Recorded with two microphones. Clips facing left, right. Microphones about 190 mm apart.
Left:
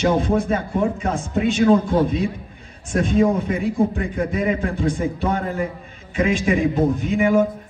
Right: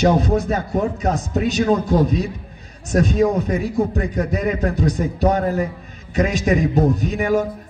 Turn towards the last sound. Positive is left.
turn(degrees=-40)  # may be behind; listen again after turning